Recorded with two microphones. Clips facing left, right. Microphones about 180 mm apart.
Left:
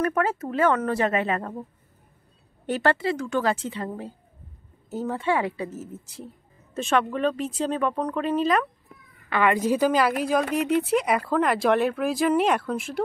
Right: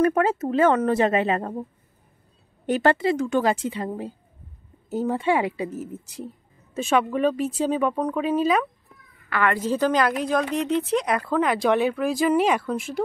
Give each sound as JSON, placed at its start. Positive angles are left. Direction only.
{"t": 0.0, "sound": "speech", "side_deg": -20}
{"t": 2.6, "sound": "a woman's voice", "side_deg": -15}
{"t": 6.7, "sound": "a woman's voice", "side_deg": -5}
{"t": 9.3, "sound": "a woman's voice", "side_deg": 15}